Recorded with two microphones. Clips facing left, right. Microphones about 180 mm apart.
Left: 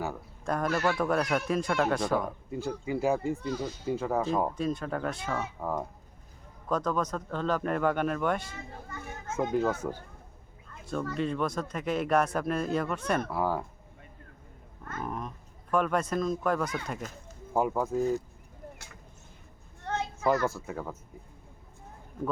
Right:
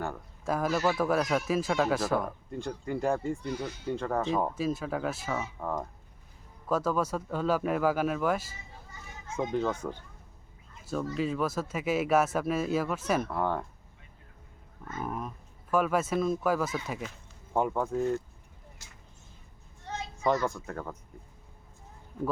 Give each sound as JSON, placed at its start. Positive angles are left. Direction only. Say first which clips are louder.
{"t": 0.0, "sound": "speech", "louder": "even", "side_deg": 0}
{"t": 5.5, "sound": "speech", "louder": "left 1 dB", "side_deg": 5}
{"t": 6.7, "sound": "speech", "louder": "right 1 dB", "side_deg": -5}
{"t": 8.5, "sound": "children playing", "louder": "left 8 dB", "side_deg": 60}
{"t": 9.4, "sound": "speech", "louder": "left 2 dB", "side_deg": 5}
{"t": 11.2, "sound": "speech", "louder": "even", "side_deg": -5}
{"t": 15.0, "sound": "speech", "louder": "right 1 dB", "side_deg": -5}
{"t": 19.8, "sound": "children playing", "louder": "left 6 dB", "side_deg": 60}
{"t": 20.5, "sound": "speech", "louder": "left 1 dB", "side_deg": 5}